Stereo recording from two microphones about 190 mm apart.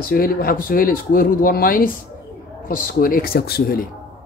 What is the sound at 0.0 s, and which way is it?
Speech, 50° left (ahead or behind).